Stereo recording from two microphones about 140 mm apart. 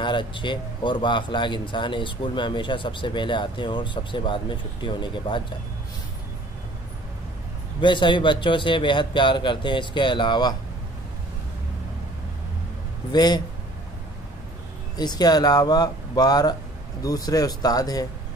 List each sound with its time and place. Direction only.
0.0 s speech: 35° left (ahead or behind)
7.8 s speech: 35° left (ahead or behind)
13.1 s speech: 30° left (ahead or behind)
15.0 s speech: 30° left (ahead or behind)